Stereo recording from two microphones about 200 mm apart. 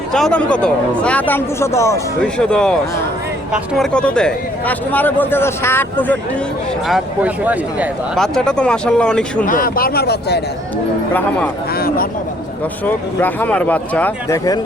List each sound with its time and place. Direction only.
0.1 s speech: 5° left (ahead or behind)
2.4 s speech: 5° left (ahead or behind)
6.8 s speech: 5° right (ahead or behind)
9.5 s speech: 45° left (ahead or behind)
11.1 s speech: 10° left (ahead or behind)
11.7 s speech: 50° left (ahead or behind)
12.8 s speech: 10° left (ahead or behind)